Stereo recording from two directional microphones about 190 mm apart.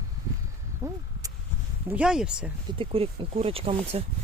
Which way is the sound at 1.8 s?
5° right (ahead or behind).